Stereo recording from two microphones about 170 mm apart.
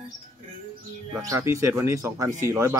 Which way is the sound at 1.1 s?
20° right (ahead or behind).